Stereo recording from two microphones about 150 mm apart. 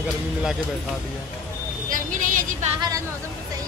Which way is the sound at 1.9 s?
60° right (ahead or behind).